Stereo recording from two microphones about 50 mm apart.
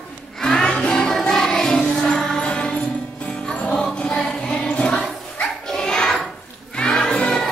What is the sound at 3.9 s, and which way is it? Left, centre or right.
Music, centre.